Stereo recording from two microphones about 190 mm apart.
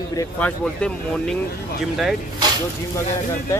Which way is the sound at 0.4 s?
5° left (ahead or behind).